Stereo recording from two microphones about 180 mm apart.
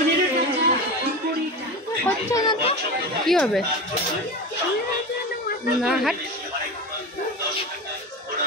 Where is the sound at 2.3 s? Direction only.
20° left (ahead or behind).